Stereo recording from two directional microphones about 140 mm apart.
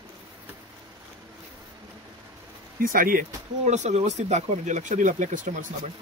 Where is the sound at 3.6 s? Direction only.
55° right (ahead or behind).